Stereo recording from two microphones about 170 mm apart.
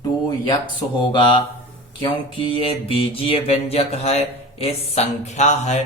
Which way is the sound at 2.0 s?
30° left (ahead or behind).